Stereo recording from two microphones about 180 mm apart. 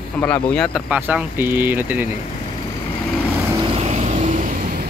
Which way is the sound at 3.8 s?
35° right (ahead or behind).